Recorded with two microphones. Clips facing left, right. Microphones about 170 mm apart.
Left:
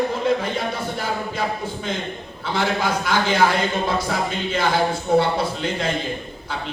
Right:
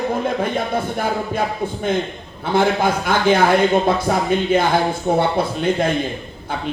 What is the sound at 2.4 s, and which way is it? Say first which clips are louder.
A man's voice: right 6 dB; 50° right (ahead or behind).